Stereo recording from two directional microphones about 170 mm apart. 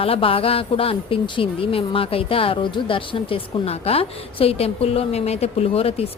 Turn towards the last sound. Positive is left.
turn(degrees=35)  # may be behind; listen again after turning